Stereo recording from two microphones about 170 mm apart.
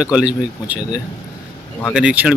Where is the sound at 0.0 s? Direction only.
5° right (ahead or behind).